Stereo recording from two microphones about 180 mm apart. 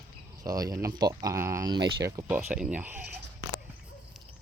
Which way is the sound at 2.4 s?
5° right (ahead or behind).